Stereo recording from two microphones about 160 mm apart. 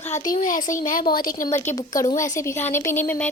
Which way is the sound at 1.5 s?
20° left (ahead or behind).